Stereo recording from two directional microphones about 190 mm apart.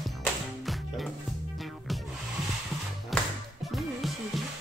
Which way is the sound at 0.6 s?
Centre (ahead or behind).